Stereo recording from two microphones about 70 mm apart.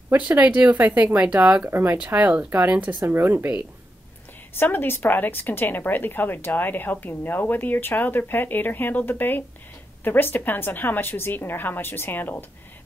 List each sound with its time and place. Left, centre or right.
0.4 s speech: right
2.1 s speech: right
4.6 s a woman's voice: left